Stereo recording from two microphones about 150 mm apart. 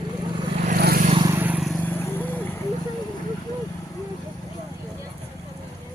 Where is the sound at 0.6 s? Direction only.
90° right.